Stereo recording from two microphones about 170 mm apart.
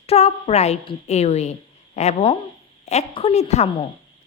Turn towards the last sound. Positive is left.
turn(degrees=40)  # may be behind; listen again after turning